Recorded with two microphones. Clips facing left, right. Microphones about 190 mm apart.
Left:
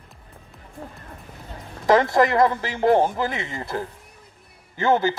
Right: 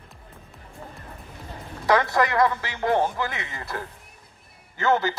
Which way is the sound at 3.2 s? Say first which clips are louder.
Left 4 dB; 25° left (ahead or behind).